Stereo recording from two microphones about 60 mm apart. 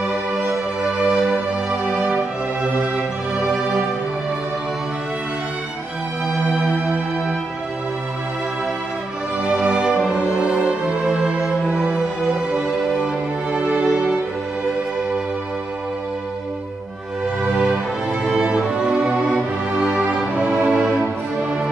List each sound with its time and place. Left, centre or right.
9.4 s music: centre
17.5 s music: centre